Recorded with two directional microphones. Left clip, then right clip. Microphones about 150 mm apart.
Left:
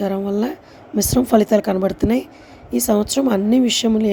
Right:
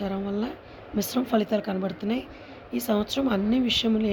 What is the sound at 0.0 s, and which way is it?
Speech, 50° left (ahead or behind).